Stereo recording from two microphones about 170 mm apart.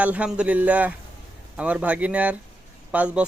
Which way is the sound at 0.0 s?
5° right (ahead or behind).